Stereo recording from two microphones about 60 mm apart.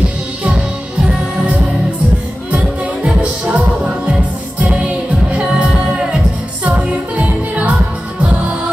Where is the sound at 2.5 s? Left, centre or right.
Right.